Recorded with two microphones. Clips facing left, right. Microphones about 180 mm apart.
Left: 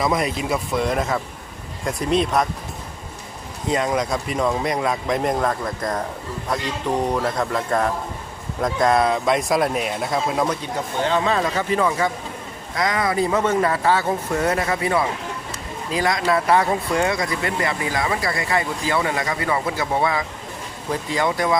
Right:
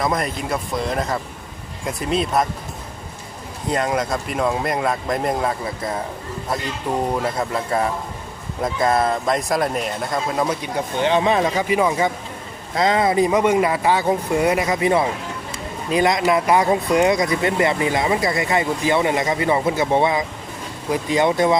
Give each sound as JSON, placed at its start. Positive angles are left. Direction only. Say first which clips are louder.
{"t": 0.0, "sound": "speech", "louder": "left 1 dB", "side_deg": 0}
{"t": 3.7, "sound": "speech", "louder": "even", "side_deg": 0}
{"t": 7.1, "sound": "speech", "louder": "even", "side_deg": -5}
{"t": 11.0, "sound": "speech", "louder": "right 3 dB", "side_deg": -20}